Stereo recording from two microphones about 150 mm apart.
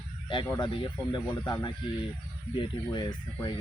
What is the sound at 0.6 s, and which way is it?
Speech, 35° left (ahead or behind).